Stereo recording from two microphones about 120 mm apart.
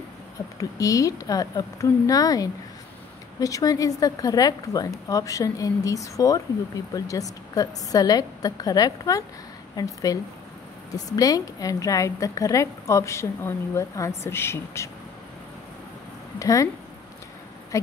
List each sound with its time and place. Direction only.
0.6 s a woman's voice: 30° left (ahead or behind)
16.3 s a woman's voice: 30° left (ahead or behind)